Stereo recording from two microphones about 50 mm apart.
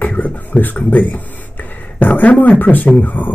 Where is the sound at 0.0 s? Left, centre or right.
Left.